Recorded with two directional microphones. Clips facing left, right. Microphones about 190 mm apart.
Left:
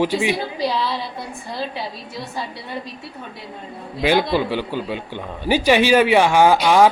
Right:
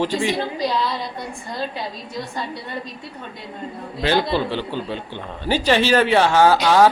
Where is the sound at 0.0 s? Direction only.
10° left (ahead or behind).